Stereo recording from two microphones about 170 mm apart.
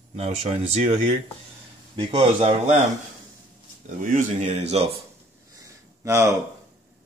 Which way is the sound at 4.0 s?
50° right (ahead or behind).